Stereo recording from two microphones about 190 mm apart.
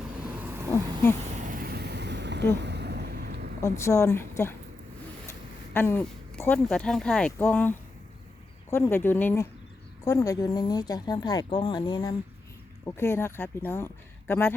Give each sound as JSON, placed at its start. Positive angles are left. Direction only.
{"t": 1.3, "sound": "vehicle", "side_deg": -40}
{"t": 2.6, "sound": "a sound", "side_deg": -65}
{"t": 3.6, "sound": "speech", "side_deg": 15}
{"t": 5.7, "sound": "a woman's voice", "side_deg": 10}
{"t": 12.8, "sound": "speech", "side_deg": 15}